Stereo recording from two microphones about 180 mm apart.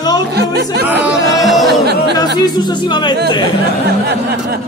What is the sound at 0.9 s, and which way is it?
Speech, 10° right (ahead or behind).